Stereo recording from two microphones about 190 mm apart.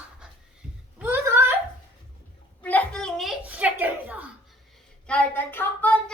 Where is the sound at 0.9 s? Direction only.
10° right (ahead or behind).